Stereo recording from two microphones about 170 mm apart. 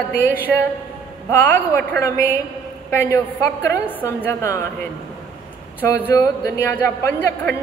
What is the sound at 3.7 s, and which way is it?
A woman's voice, 15° left (ahead or behind).